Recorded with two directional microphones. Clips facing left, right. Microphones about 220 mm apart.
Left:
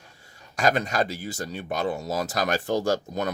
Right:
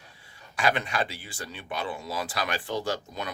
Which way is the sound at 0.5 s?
40° left (ahead or behind).